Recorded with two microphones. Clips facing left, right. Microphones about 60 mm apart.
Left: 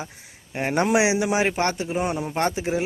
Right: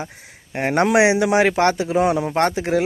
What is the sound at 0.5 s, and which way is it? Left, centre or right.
A man's voice, right.